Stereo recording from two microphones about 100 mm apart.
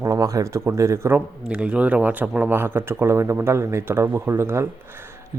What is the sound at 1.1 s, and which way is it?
Speech, 10° right (ahead or behind).